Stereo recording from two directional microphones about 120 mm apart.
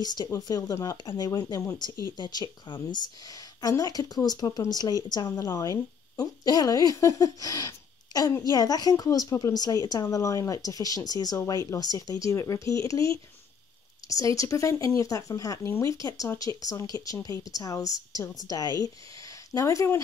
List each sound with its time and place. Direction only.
0.0 s speech: 35° left (ahead or behind)